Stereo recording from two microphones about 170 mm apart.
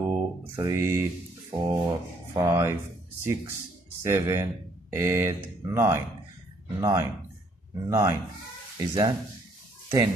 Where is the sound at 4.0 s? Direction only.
15° right (ahead or behind).